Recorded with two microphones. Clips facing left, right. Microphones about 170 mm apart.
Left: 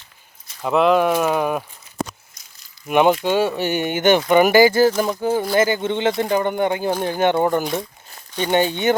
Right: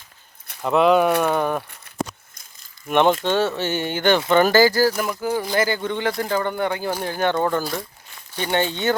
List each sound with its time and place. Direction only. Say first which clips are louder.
0.6 s speech: even; centre (ahead or behind)
2.8 s speech: left 2 dB; 10° left (ahead or behind)